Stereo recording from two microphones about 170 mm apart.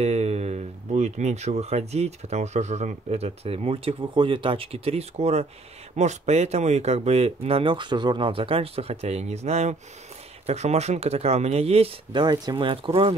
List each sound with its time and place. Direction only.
0.0 s speech: 40° right (ahead or behind)